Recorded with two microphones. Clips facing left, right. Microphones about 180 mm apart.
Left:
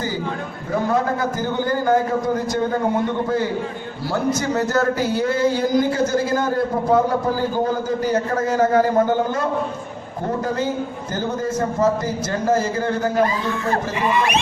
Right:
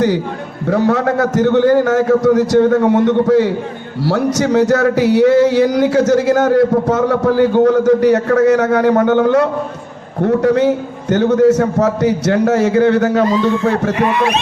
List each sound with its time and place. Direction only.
0.7 s a man's voice: 75° right (ahead or behind)